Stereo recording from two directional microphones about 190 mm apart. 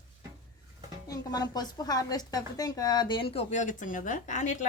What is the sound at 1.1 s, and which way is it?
A woman's voice, 20° left (ahead or behind).